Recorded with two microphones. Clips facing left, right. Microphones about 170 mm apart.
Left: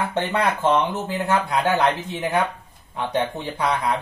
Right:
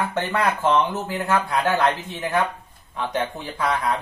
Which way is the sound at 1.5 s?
20° left (ahead or behind).